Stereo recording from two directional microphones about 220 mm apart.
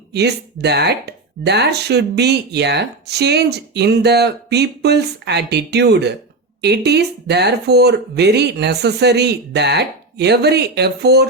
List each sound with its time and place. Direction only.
0.1 s speech: 50° right (ahead or behind)